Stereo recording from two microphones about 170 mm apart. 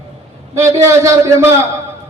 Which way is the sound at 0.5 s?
15° right (ahead or behind).